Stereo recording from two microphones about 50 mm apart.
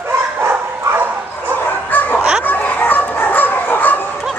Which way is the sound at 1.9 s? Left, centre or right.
Left.